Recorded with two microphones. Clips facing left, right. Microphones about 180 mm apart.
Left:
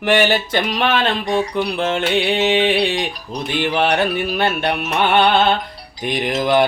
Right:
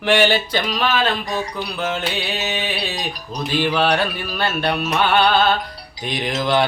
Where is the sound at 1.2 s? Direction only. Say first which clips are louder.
Left 6 dB; 25° left (ahead or behind).